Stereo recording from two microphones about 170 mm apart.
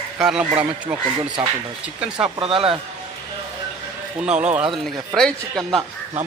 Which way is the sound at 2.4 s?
30° right (ahead or behind).